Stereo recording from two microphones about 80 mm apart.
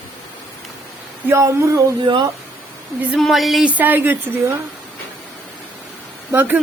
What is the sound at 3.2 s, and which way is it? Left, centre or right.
Speech, centre.